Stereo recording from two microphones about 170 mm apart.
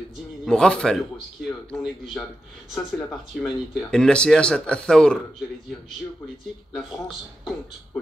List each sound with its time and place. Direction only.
0.5 s speech: 5° left (ahead or behind)
6.7 s speech: centre (ahead or behind)